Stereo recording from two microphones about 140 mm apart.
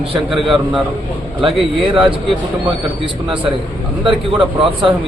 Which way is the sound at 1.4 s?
40° right (ahead or behind).